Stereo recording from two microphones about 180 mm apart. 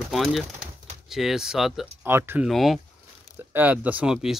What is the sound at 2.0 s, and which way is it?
Speech, 15° right (ahead or behind).